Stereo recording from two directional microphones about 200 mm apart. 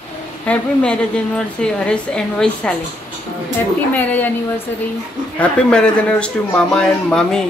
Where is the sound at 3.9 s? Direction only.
10° left (ahead or behind).